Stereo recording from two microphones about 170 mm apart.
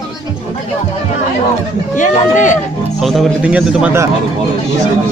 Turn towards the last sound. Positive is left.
turn(degrees=-10)  # may be behind; listen again after turning